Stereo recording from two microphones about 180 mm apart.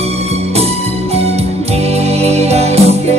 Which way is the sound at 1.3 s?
35° right (ahead or behind).